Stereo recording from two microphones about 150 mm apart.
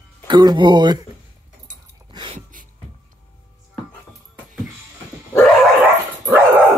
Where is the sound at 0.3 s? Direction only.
30° right (ahead or behind).